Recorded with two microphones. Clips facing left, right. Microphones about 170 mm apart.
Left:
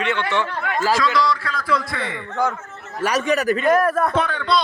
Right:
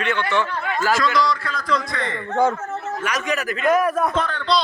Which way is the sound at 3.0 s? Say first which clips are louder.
Left 8 dB; 35° left (ahead or behind).